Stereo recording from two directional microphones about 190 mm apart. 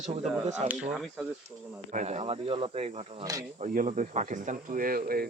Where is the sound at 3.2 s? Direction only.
20° right (ahead or behind).